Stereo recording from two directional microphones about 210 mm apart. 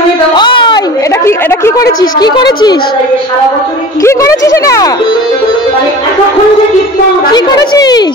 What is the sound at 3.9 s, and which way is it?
A woman's voice, 15° left (ahead or behind).